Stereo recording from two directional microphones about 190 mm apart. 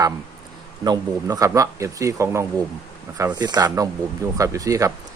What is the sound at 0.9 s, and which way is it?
A man's voice, 20° right (ahead or behind).